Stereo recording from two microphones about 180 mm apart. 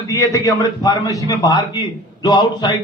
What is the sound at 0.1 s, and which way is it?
A man's voice, 20° left (ahead or behind).